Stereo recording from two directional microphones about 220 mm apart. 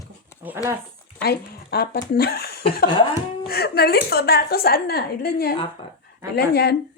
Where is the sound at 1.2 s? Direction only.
45° left (ahead or behind).